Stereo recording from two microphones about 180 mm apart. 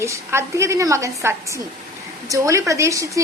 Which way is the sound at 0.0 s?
15° right (ahead or behind).